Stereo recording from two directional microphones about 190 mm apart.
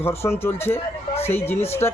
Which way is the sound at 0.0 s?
15° left (ahead or behind).